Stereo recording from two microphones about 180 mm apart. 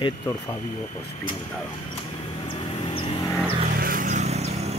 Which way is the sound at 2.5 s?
30° left (ahead or behind).